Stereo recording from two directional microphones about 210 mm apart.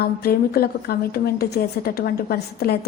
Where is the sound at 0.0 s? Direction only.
45° left (ahead or behind).